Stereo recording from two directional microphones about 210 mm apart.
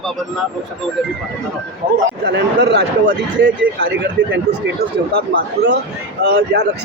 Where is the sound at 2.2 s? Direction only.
55° right (ahead or behind).